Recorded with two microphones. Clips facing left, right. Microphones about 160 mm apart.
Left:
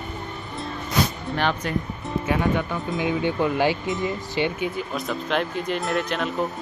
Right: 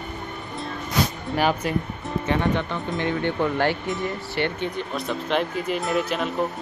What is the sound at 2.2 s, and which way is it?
Speech, 10° left (ahead or behind).